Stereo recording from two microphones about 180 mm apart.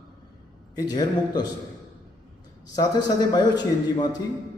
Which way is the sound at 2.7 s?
20° left (ahead or behind).